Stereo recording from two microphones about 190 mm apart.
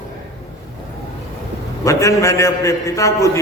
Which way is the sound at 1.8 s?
15° left (ahead or behind).